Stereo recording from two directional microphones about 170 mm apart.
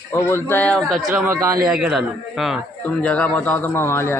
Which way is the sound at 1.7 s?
5° right (ahead or behind).